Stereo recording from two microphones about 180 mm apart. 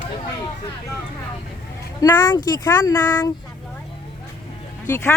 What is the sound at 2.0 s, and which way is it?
Speech, 20° left (ahead or behind).